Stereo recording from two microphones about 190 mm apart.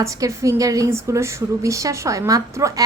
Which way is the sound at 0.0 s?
15° right (ahead or behind).